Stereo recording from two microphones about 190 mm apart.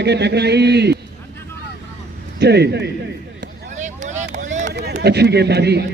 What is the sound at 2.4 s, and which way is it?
Speech, 60° right (ahead or behind).